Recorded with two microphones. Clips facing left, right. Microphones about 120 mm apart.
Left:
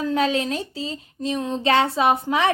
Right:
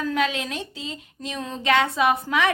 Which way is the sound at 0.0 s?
30° left (ahead or behind).